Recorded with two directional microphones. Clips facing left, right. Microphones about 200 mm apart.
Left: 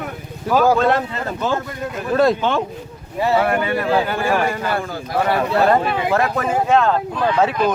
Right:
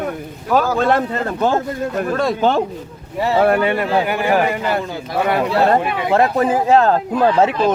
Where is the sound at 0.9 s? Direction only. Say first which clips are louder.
Right 3 dB; 50° right (ahead or behind).